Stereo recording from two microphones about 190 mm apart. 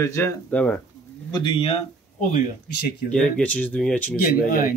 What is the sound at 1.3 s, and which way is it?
Speech, 25° left (ahead or behind).